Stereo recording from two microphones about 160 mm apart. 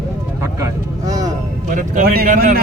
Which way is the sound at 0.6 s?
20° right (ahead or behind).